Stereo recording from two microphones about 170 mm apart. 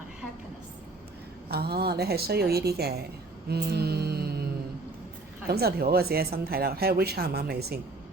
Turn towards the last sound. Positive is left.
turn(degrees=-65)  # may be behind; listen again after turning